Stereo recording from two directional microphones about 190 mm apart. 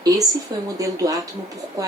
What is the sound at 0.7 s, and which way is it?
Speech, 20° right (ahead or behind).